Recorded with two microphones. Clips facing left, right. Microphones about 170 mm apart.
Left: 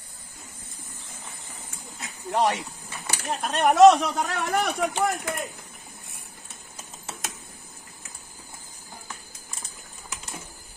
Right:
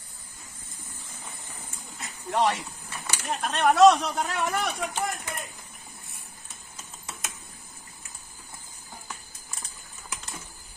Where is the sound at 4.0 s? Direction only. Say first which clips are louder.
Left 1 dB; 60° left (ahead or behind).